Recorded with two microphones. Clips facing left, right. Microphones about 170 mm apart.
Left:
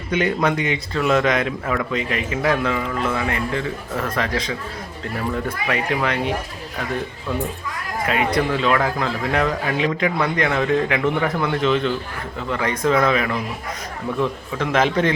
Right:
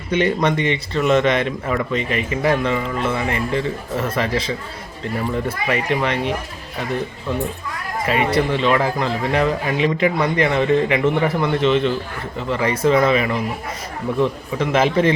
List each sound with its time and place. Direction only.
0.1 s speech: centre (ahead or behind)
8.0 s speech: centre (ahead or behind)